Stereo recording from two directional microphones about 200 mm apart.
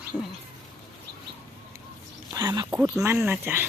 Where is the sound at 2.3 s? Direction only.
20° right (ahead or behind).